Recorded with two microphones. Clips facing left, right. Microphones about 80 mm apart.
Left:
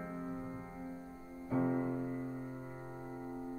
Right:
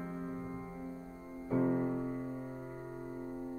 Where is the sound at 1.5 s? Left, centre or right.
Centre.